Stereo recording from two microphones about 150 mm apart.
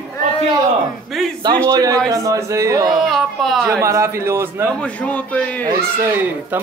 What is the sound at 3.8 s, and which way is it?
Speech, 20° right (ahead or behind).